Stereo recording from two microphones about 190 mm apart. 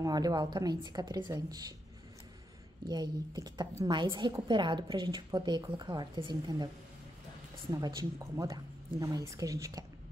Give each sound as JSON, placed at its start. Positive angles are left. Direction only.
{"t": 0.0, "sound": "a woman's voice", "side_deg": -20}
{"t": 2.9, "sound": "a woman's voice", "side_deg": -20}